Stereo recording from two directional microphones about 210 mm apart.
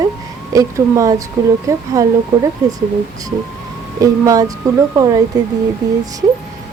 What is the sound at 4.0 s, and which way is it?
Speech, 15° right (ahead or behind).